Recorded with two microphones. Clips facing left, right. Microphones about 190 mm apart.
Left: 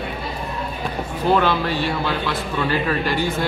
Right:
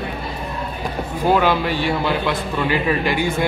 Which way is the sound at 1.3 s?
10° right (ahead or behind).